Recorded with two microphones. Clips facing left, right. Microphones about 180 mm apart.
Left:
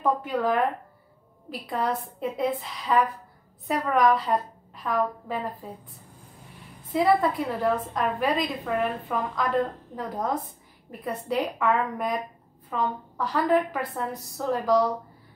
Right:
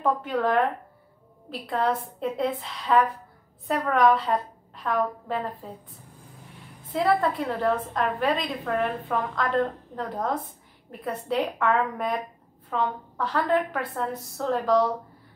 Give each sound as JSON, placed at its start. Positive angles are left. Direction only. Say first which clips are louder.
{"t": 0.0, "sound": "a woman's voice", "louder": "even", "side_deg": 5}
{"t": 6.9, "sound": "a woman's voice", "louder": "left 1 dB", "side_deg": 5}